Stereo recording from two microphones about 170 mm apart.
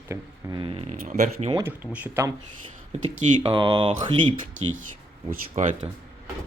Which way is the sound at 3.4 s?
30° right (ahead or behind).